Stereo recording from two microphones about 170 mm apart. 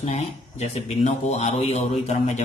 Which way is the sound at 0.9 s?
40° left (ahead or behind).